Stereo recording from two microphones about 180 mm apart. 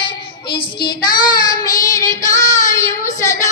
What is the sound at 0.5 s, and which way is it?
Child singing, 25° left (ahead or behind).